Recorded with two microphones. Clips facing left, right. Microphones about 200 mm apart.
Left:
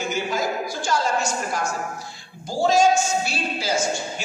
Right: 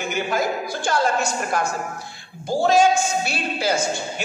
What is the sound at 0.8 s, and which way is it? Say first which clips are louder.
A woman's voice: right 2 dB; 60° right (ahead or behind).